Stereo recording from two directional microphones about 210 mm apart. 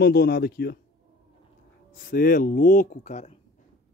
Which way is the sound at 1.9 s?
40° left (ahead or behind).